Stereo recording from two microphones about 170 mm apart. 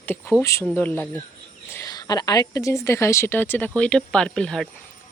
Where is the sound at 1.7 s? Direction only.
20° left (ahead or behind).